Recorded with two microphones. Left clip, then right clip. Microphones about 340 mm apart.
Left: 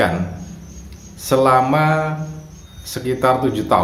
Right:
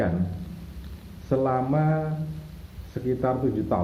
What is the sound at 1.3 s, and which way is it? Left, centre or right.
Speech, left.